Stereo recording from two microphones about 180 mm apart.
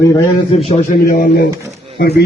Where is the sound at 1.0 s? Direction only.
60° left (ahead or behind).